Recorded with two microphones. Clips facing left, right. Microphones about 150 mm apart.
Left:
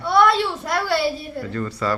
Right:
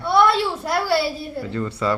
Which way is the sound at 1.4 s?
20° right (ahead or behind).